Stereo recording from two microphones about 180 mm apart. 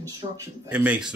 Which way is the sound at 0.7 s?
5° right (ahead or behind).